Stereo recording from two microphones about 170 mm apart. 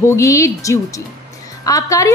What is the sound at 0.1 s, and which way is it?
A woman's voice, 20° left (ahead or behind).